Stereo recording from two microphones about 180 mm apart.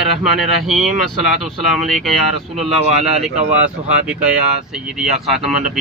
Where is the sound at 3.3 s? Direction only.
40° right (ahead or behind).